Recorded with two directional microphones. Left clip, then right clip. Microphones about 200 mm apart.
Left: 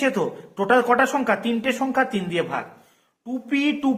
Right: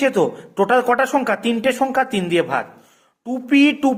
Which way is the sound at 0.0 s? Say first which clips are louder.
Right 5 dB; 45° right (ahead or behind).